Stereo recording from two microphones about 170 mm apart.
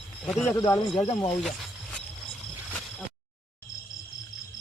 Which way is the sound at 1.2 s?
5° left (ahead or behind).